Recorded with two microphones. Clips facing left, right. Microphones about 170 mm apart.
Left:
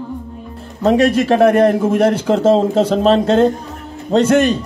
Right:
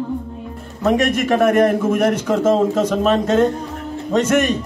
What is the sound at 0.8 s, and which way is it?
A man's voice, 30° left (ahead or behind).